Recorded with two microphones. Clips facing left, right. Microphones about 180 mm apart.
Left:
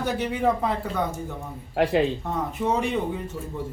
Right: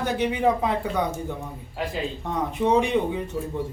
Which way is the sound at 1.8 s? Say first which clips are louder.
Left 8 dB; 65° left (ahead or behind).